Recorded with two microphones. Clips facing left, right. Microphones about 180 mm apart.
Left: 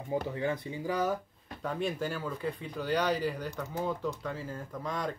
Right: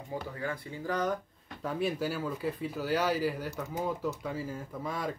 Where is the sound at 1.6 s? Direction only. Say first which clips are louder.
Right 1 dB; 5° right (ahead or behind).